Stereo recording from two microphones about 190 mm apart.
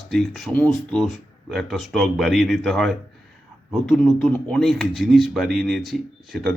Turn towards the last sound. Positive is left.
turn(degrees=0)  # may be behind; listen again after turning